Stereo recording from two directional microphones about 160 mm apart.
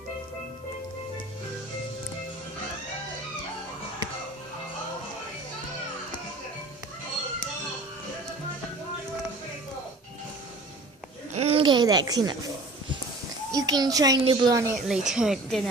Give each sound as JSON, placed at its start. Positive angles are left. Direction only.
{"t": 11.3, "sound": "a sound", "side_deg": -40}
{"t": 13.5, "sound": "a child's voice", "side_deg": -25}
{"t": 14.8, "sound": "speech", "side_deg": -5}